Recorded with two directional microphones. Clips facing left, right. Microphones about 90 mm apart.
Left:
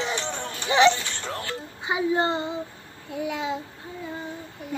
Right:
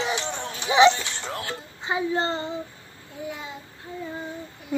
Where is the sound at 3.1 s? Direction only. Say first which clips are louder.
Left 6 dB; 85° left.